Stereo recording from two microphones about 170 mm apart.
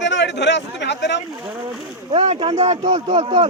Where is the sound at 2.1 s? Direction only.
40° right (ahead or behind).